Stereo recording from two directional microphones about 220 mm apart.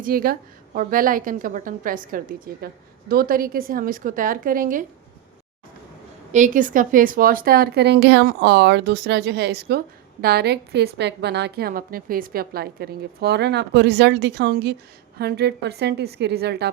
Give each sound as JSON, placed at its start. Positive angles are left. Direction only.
{"t": 0.0, "sound": "a woman's voice", "side_deg": -40}
{"t": 6.3, "sound": "a woman's voice", "side_deg": -35}